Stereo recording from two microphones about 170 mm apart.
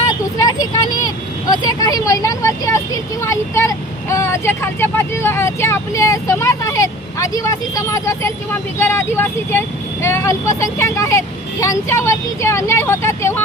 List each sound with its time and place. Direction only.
0.3 s vehicle: 20° left (ahead or behind)
1.5 s speech: 20° left (ahead or behind)